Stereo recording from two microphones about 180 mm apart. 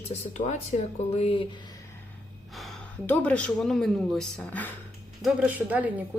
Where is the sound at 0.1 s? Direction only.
40° left (ahead or behind).